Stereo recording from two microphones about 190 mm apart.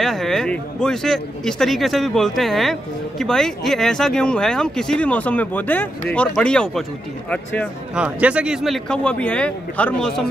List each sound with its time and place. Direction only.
0.0 s speech: centre (ahead or behind)
7.9 s speech: 5° right (ahead or behind)